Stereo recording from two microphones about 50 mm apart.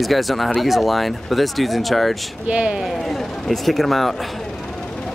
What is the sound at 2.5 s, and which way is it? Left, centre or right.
Speech, centre.